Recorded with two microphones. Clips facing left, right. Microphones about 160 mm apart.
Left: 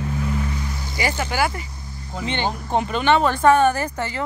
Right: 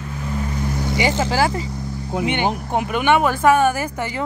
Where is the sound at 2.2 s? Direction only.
15° right (ahead or behind).